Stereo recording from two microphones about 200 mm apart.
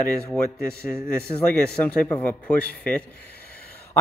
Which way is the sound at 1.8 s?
10° left (ahead or behind).